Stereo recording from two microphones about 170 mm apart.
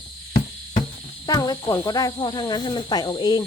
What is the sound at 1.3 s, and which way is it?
Speech, 20° left (ahead or behind).